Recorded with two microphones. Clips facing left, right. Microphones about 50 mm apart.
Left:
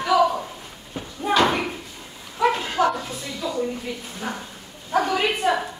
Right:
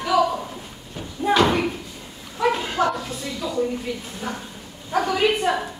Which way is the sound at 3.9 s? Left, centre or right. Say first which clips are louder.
Right 3 dB; centre.